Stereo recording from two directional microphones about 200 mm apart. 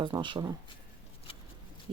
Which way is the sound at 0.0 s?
20° right (ahead or behind).